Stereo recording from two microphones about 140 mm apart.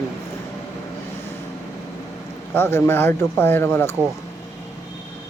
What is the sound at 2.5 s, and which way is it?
Speech, 15° left (ahead or behind).